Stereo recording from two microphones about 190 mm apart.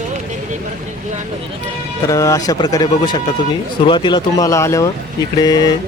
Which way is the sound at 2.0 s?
15° left (ahead or behind).